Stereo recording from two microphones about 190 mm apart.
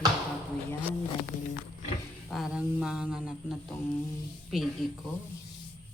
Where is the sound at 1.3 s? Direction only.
40° left (ahead or behind).